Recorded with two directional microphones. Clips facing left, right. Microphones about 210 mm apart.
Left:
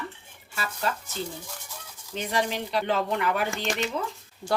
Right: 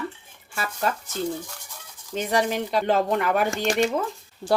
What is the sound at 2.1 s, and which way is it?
Speech, 50° right (ahead or behind).